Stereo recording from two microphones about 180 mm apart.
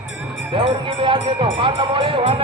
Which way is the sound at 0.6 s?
30° right (ahead or behind).